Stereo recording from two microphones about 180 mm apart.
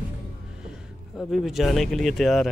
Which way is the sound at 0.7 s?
Centre (ahead or behind).